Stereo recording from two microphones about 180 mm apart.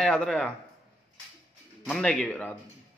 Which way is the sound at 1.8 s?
5° left (ahead or behind).